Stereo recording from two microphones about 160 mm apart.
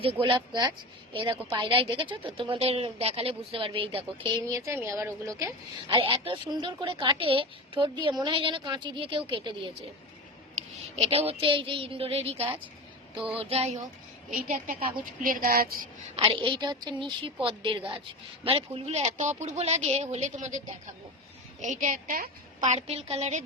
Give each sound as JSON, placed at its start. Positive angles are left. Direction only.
{"t": 0.0, "sound": "a woman's voice", "side_deg": -35}
{"t": 5.9, "sound": "a woman's voice", "side_deg": -30}
{"t": 10.5, "sound": "a woman's voice", "side_deg": -40}
{"t": 14.3, "sound": "a woman's voice", "side_deg": -55}
{"t": 16.1, "sound": "a woman's voice", "side_deg": -35}
{"t": 21.6, "sound": "speech", "side_deg": -50}